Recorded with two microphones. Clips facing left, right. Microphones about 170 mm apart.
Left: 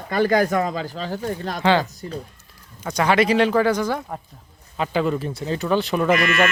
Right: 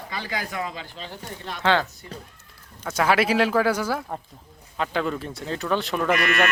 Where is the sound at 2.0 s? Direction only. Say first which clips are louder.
Left 8 dB; 40° left (ahead or behind).